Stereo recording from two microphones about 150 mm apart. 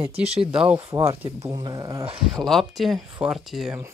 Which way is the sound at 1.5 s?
30° right (ahead or behind).